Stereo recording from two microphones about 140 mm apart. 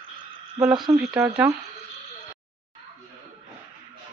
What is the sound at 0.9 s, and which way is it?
Speech, 5° right (ahead or behind).